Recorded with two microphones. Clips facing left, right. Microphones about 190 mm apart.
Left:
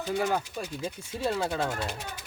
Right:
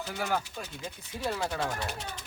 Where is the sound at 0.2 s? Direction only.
15° left (ahead or behind).